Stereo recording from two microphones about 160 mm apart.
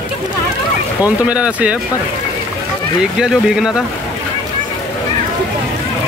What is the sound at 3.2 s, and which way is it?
Speech, 5° right (ahead or behind).